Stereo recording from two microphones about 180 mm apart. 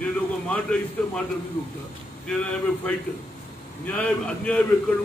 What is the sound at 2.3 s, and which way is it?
A man's voice, 5° left (ahead or behind).